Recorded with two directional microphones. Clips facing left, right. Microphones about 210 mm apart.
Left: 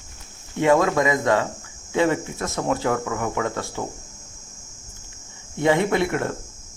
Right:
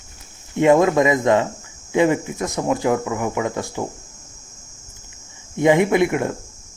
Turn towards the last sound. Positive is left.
turn(degrees=-15)  # may be behind; listen again after turning